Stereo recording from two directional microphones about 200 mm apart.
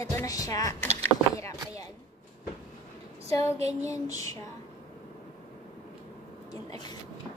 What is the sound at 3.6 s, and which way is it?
Child singing, 30° right (ahead or behind).